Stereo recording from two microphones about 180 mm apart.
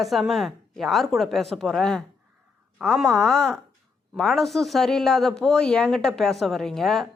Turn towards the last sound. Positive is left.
turn(degrees=0)  # may be behind; listen again after turning